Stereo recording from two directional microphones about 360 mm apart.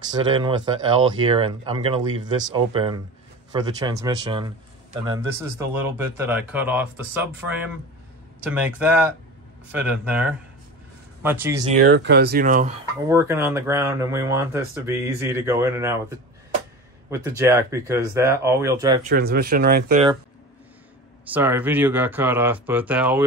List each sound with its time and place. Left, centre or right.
0.1 s speech: centre
11.6 s speech: right
13.1 s speech: centre
19.0 s speech: right
21.3 s speech: centre